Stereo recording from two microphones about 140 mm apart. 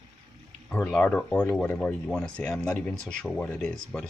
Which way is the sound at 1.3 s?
20° left (ahead or behind).